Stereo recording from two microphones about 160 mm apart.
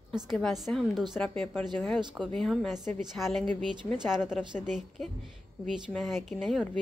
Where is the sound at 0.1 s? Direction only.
Centre (ahead or behind).